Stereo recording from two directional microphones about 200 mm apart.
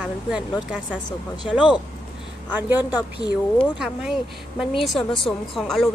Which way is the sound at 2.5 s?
10° right (ahead or behind).